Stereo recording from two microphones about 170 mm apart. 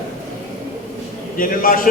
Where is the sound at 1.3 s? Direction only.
55° left (ahead or behind).